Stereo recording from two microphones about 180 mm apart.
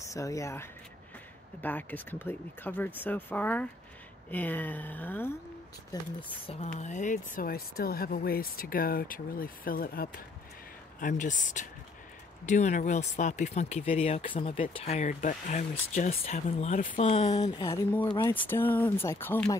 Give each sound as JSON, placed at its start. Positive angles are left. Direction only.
{"t": 0.1, "sound": "speech", "side_deg": 20}
{"t": 6.4, "sound": "speech", "side_deg": 35}
{"t": 17.4, "sound": "speech", "side_deg": 20}
{"t": 18.3, "sound": "speech", "side_deg": 10}